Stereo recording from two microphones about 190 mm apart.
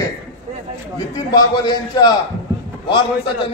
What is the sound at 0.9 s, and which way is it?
A man's voice, 20° left (ahead or behind).